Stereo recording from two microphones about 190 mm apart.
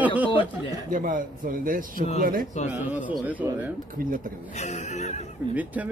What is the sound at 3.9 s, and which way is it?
Speech, 45° right (ahead or behind).